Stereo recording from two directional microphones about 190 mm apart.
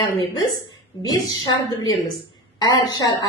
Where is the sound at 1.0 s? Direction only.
20° left (ahead or behind).